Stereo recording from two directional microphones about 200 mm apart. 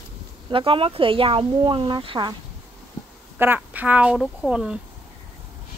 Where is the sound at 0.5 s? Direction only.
25° right (ahead or behind).